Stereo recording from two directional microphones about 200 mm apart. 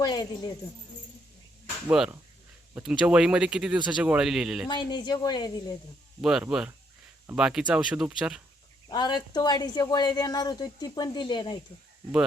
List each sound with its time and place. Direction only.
0.0 s a woman's voice: 20° left (ahead or behind)
1.9 s speech: 5° right (ahead or behind)
4.7 s a woman's voice: 20° left (ahead or behind)
6.2 s speech: 5° right (ahead or behind)
8.9 s a woman's voice: 20° left (ahead or behind)